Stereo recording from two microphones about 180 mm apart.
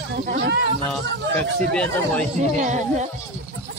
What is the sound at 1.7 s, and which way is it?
Speech, 5° left (ahead or behind).